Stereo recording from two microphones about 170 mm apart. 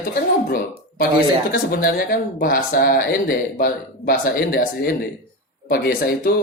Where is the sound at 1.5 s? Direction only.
60° left (ahead or behind).